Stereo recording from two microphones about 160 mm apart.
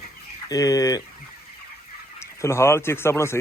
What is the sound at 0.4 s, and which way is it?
Speech, 25° left (ahead or behind).